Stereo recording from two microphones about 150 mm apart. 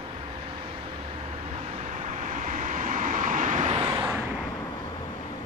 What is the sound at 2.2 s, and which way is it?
Vehicle, 60° right (ahead or behind).